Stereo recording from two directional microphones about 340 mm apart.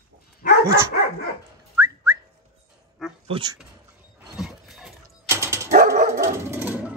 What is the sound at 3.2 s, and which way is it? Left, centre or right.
Speech, centre.